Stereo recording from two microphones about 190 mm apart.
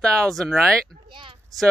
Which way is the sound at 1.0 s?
25° right (ahead or behind).